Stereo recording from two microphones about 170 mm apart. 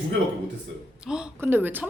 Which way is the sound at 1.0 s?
5° right (ahead or behind).